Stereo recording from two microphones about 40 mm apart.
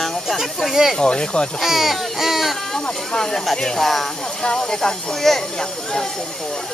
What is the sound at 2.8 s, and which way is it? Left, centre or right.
Speech, centre.